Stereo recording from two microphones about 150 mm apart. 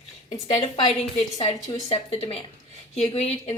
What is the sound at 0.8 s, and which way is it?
Speech, 40° left (ahead or behind).